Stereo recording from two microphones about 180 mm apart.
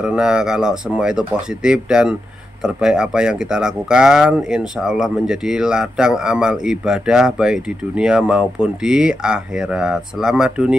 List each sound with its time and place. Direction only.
0.0 s speech: 5° right (ahead or behind)